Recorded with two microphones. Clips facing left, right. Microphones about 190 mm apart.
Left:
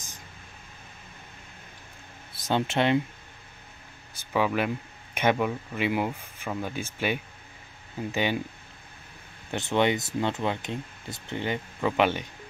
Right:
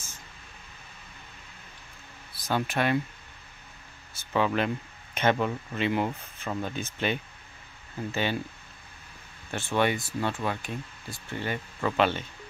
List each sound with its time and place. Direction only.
2.3 s speech: 20° left (ahead or behind)
4.1 s speech: 10° left (ahead or behind)
9.5 s speech: 20° left (ahead or behind)